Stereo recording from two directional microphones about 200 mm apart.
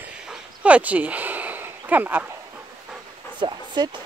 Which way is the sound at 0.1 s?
5° right (ahead or behind).